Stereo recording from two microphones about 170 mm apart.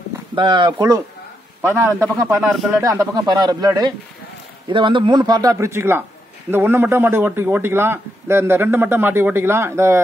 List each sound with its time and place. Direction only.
0.4 s a man's voice: 30° right (ahead or behind)